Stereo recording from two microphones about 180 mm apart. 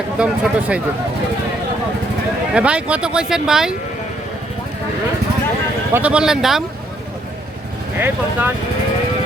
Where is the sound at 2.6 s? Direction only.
5° right (ahead or behind).